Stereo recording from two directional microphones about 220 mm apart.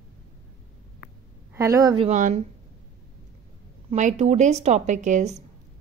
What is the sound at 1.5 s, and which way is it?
Speech, 15° right (ahead or behind).